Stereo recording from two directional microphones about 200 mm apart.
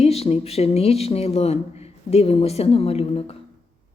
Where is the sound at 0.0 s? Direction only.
30° left (ahead or behind).